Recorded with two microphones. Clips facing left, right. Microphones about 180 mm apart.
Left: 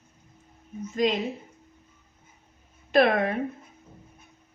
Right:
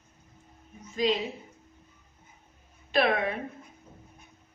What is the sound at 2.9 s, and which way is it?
Speech, 50° left (ahead or behind).